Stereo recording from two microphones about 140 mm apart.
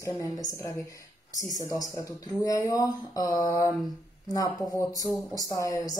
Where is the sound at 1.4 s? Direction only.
25° left (ahead or behind).